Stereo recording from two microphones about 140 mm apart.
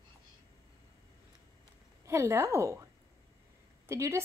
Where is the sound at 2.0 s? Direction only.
20° right (ahead or behind).